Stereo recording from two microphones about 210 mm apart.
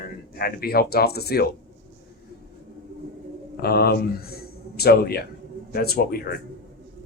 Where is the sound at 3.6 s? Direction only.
50° left (ahead or behind).